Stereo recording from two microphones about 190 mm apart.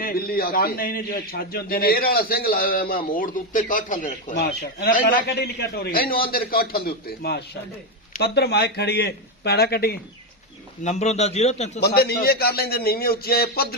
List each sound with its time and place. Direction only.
0.0 s a man's voice: 50° left (ahead or behind)
10.8 s a man's voice: 35° left (ahead or behind)
11.8 s a man's voice: 55° left (ahead or behind)